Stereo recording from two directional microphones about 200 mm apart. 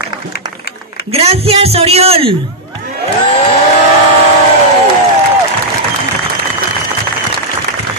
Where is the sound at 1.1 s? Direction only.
30° right (ahead or behind).